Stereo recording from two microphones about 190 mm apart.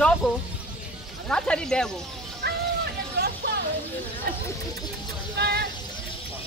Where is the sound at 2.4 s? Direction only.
60° right (ahead or behind).